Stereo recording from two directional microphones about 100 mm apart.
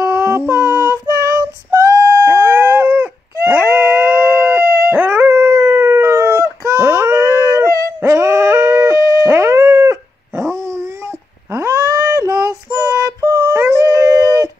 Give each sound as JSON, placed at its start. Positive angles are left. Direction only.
{"t": 0.0, "sound": "female singing", "side_deg": -25}
{"t": 2.2, "sound": "dog", "side_deg": -25}
{"t": 3.6, "sound": "howl", "side_deg": -20}
{"t": 9.0, "sound": "dog", "side_deg": -35}
{"t": 12.9, "sound": "music", "side_deg": -35}
{"t": 13.6, "sound": "dog", "side_deg": -30}